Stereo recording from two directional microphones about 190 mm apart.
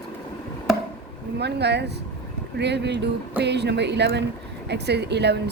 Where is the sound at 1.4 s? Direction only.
60° right (ahead or behind).